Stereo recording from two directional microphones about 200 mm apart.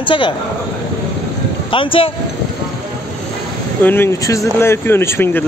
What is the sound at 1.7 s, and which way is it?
Speech, 25° left (ahead or behind).